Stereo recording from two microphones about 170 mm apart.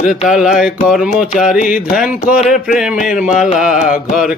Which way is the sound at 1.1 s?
50° left (ahead or behind).